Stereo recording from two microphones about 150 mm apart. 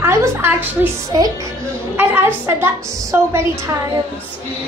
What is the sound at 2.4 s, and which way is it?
Speech, 15° right (ahead or behind).